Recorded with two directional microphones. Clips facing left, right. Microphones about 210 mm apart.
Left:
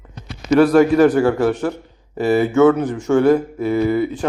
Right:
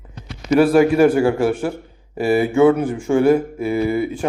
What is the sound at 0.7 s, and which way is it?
Speech, 10° right (ahead or behind).